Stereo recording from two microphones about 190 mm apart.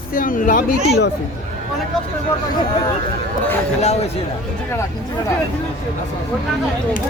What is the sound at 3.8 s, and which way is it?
Speech, 35° left (ahead or behind).